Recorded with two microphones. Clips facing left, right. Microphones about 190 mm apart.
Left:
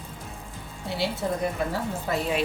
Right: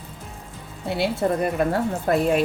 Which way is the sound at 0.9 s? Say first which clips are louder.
Right 6 dB; 55° right (ahead or behind).